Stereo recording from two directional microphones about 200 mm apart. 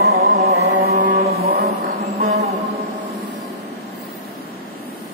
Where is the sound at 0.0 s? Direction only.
50° right (ahead or behind).